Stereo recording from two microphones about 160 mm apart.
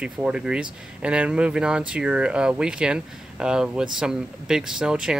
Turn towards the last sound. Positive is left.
turn(degrees=-5)  # may be behind; listen again after turning